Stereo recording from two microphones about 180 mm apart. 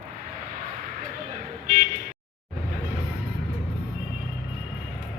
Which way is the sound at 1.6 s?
40° right (ahead or behind).